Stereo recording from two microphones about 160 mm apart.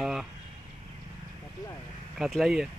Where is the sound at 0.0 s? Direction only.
Centre (ahead or behind).